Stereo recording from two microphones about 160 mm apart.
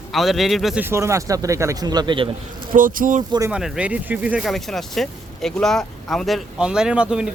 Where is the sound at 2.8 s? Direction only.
60° right (ahead or behind).